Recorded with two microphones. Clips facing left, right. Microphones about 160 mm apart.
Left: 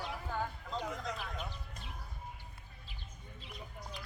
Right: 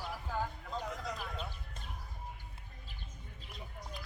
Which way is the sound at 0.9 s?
Centre (ahead or behind).